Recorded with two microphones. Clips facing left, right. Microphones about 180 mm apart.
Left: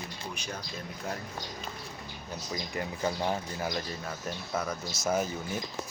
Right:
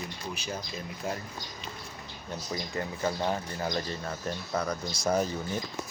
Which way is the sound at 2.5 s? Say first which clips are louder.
Right 1 dB; 15° left (ahead or behind).